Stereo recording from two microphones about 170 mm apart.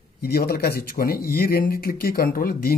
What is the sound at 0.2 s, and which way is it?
Speech, 65° left (ahead or behind).